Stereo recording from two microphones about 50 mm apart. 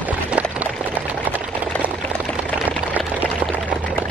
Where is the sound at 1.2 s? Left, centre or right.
Right.